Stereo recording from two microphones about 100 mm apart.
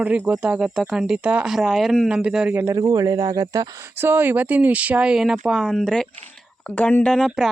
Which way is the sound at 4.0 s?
20° right (ahead or behind).